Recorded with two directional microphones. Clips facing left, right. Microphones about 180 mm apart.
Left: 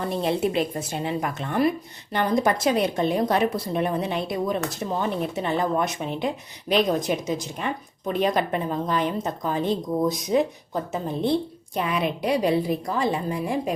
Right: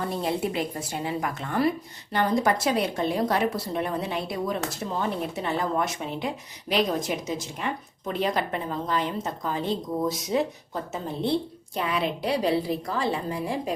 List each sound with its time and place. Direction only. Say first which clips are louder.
0.2 s a woman's voice: left 6 dB; 25° left (ahead or behind)